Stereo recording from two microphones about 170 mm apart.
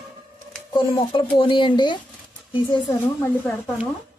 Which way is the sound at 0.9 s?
30° left (ahead or behind).